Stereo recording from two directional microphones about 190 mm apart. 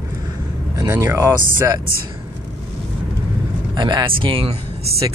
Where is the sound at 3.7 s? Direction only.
25° right (ahead or behind).